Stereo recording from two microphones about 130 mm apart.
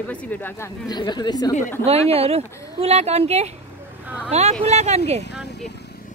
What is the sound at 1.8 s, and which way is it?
Speech, 50° right (ahead or behind).